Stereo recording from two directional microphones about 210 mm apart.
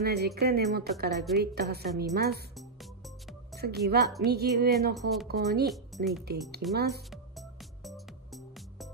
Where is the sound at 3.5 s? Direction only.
50° right (ahead or behind).